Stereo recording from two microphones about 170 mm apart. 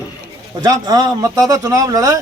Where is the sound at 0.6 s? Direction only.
25° right (ahead or behind).